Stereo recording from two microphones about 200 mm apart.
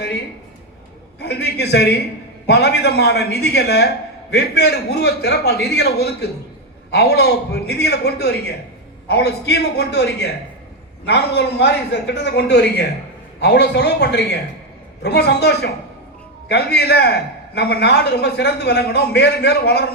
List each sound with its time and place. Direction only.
1.2 s a man's voice: 55° left (ahead or behind)